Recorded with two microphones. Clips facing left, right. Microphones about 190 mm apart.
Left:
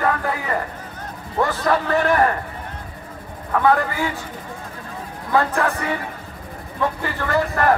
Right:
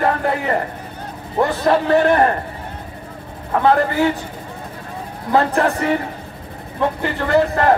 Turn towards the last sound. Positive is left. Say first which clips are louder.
# right 4 dB
turn(degrees=-25)  # may be behind; listen again after turning